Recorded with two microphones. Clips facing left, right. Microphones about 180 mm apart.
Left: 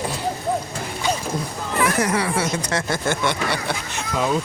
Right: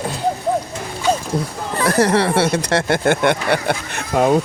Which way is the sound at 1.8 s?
35° right (ahead or behind).